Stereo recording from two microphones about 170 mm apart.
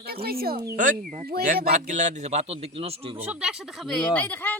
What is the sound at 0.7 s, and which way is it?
A man's voice, 50° right (ahead or behind).